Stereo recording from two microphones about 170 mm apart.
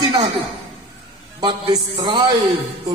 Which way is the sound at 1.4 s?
25° right (ahead or behind).